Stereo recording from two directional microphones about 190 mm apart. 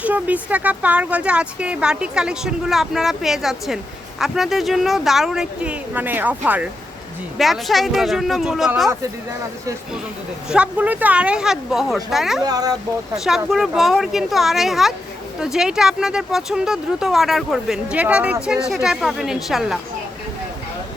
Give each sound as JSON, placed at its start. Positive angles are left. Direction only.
{"t": 0.0, "sound": "a sound", "side_deg": -10}
{"t": 0.5, "sound": "speech", "side_deg": -5}
{"t": 10.5, "sound": "speech", "side_deg": -5}
{"t": 12.5, "sound": "speech", "side_deg": -20}
{"t": 13.1, "sound": "speech", "side_deg": 0}